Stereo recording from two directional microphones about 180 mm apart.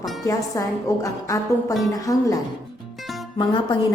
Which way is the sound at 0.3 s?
20° left (ahead or behind).